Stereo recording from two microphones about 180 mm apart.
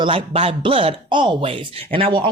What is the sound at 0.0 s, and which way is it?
Speech, 30° right (ahead or behind).